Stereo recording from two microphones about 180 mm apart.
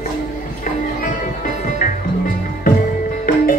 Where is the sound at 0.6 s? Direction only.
50° left (ahead or behind).